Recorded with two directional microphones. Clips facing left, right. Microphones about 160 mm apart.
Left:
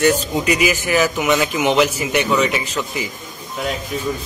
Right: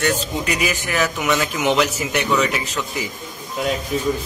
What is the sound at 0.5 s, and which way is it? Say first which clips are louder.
A man's voice: left 7 dB; centre (ahead or behind).